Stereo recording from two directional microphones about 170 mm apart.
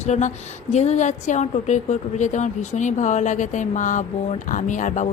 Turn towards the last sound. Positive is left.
turn(degrees=45)  # may be behind; listen again after turning